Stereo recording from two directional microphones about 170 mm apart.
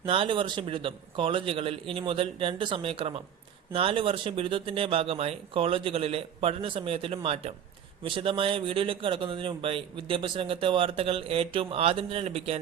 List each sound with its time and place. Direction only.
0.0 s speech: 30° right (ahead or behind)